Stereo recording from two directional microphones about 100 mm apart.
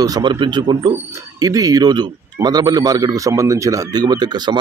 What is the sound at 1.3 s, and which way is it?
A man's voice, 35° right (ahead or behind).